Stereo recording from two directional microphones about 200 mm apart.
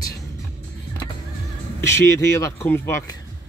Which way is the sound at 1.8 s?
15° left (ahead or behind).